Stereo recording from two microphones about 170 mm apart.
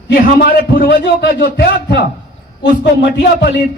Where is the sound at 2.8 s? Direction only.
90° left.